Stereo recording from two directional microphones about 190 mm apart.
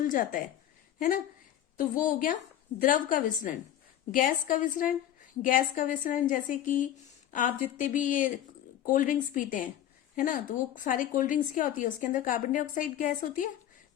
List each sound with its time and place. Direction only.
0.1 s speech: 45° left (ahead or behind)